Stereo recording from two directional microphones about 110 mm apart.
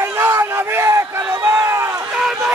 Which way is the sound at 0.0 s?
25° right (ahead or behind).